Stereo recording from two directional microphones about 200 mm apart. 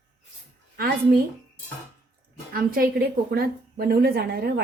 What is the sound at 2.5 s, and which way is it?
A woman's voice, 50° right (ahead or behind).